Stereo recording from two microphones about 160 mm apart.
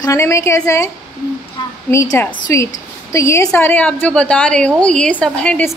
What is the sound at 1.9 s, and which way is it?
A woman's voice, 20° left (ahead or behind).